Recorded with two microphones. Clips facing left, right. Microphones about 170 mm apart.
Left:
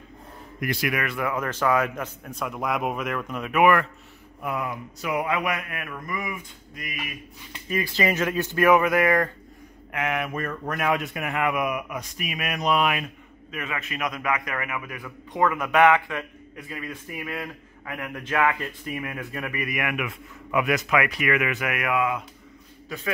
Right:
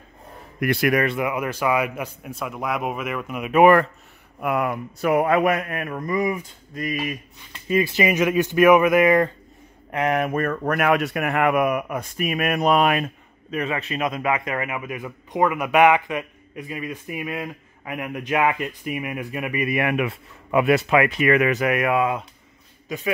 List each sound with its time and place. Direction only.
0.6 s a man's voice: 60° right (ahead or behind)
1.0 s a man's voice: 20° right (ahead or behind)
3.5 s speech: 35° right (ahead or behind)
4.4 s speech: 70° right (ahead or behind); by 7.2 s 40° right (ahead or behind)
7.6 s a man's voice: 20° right (ahead or behind)
9.8 s speech: 35° right (ahead or behind)
22.9 s a man's voice: 15° right (ahead or behind)